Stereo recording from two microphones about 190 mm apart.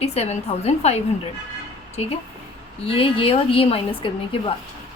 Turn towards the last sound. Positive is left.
turn(degrees=30)  # may be behind; listen again after turning